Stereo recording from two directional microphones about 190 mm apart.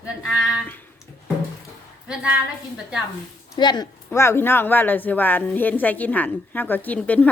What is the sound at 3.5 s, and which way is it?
A woman's voice, 20° left (ahead or behind).